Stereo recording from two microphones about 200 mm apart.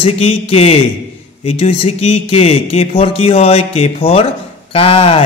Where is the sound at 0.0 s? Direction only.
30° left (ahead or behind).